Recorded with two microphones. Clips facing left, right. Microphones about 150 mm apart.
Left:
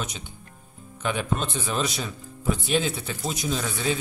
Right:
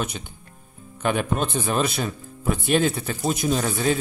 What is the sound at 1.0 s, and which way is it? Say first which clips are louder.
Speech: right 4 dB; 55° right (ahead or behind).